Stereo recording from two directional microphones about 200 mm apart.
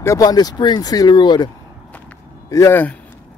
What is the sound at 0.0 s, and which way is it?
Speech, 15° left (ahead or behind).